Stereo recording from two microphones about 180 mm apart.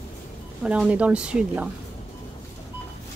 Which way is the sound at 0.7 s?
5° right (ahead or behind).